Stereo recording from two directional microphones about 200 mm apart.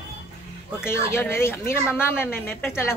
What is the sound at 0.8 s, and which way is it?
A woman's voice, 15° left (ahead or behind).